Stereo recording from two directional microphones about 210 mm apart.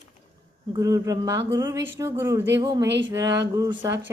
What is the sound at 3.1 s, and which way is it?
Speech, 15° right (ahead or behind).